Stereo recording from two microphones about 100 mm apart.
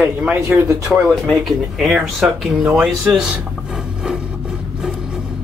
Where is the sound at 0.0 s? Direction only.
10° right (ahead or behind).